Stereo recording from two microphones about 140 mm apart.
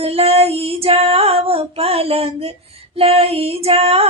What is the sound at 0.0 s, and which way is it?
Female singing, 45° right (ahead or behind).